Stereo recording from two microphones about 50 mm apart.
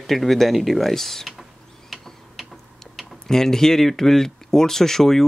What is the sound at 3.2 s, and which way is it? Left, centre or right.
Speech, centre.